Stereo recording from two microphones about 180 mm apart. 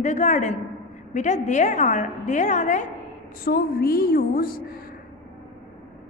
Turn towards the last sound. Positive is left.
turn(degrees=55)  # may be behind; listen again after turning